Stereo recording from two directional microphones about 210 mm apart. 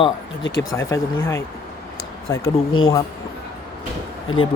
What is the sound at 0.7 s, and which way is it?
Speech, 15° left (ahead or behind).